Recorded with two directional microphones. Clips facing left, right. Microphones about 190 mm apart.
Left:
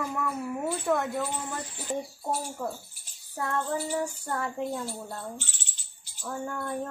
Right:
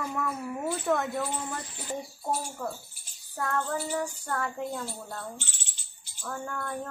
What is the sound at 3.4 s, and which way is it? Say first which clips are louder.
Child singing: even; 20° left (ahead or behind).